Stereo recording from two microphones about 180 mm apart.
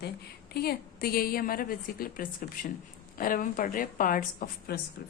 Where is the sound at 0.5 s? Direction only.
60° left (ahead or behind).